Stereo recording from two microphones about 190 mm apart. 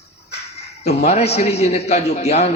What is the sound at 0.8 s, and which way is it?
A man's voice, 35° left (ahead or behind).